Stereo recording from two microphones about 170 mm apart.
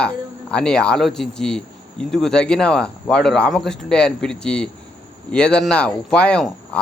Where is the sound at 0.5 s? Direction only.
5° left (ahead or behind).